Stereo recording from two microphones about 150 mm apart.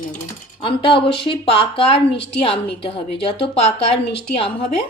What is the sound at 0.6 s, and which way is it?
Speech, 35° left (ahead or behind).